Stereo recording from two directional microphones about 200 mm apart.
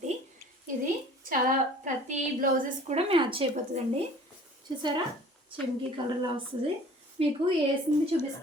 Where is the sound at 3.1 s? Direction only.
25° right (ahead or behind).